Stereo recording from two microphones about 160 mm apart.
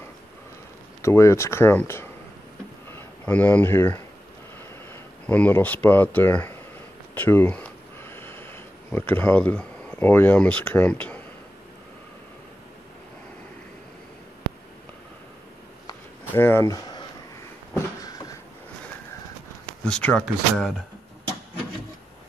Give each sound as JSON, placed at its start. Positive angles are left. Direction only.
{"t": 1.0, "sound": "speech", "side_deg": 15}
{"t": 5.2, "sound": "speech", "side_deg": 10}
{"t": 7.2, "sound": "a sound", "side_deg": 10}
{"t": 16.3, "sound": "speech", "side_deg": 15}
{"t": 17.7, "sound": "a sound", "side_deg": 20}
{"t": 19.8, "sound": "speech", "side_deg": 5}